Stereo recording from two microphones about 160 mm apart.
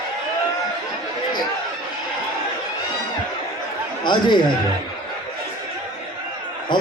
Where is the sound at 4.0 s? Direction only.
30° left (ahead or behind).